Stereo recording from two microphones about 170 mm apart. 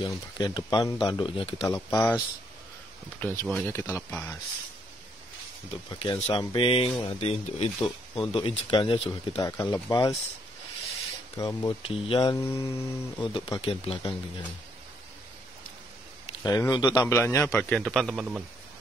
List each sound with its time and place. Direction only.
0.0 s speech: 25° left (ahead or behind)
1.9 s a man's voice: 15° left (ahead or behind)
6.2 s speech: 30° left (ahead or behind)
9.4 s speech: 20° left (ahead or behind)
11.3 s speech: 25° left (ahead or behind)
16.4 s a man's voice: 20° left (ahead or behind); by 18.4 s centre (ahead or behind)